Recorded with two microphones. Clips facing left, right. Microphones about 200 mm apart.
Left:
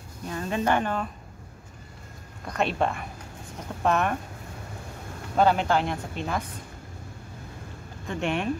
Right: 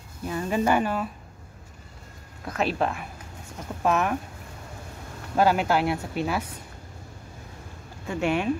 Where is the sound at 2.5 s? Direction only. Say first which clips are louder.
Even; centre (ahead or behind).